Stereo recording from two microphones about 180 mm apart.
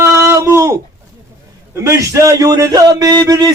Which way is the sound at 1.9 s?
15° right (ahead or behind).